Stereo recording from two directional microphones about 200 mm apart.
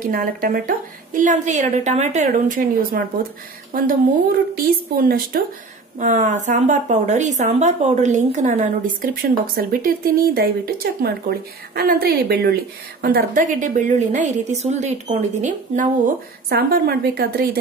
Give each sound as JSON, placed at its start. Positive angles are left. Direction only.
{"t": 0.0, "sound": "a woman's voice", "side_deg": -45}
{"t": 16.4, "sound": "a woman's voice", "side_deg": -50}